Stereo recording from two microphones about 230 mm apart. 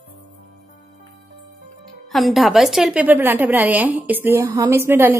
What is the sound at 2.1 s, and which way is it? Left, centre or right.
A woman's voice, centre.